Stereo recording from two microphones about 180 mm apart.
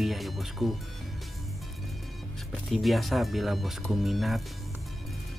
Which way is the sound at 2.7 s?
Centre (ahead or behind).